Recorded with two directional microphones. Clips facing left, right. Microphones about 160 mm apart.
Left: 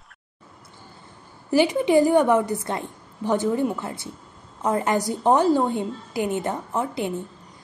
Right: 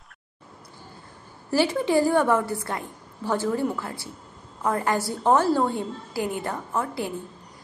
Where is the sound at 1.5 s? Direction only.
15° left (ahead or behind).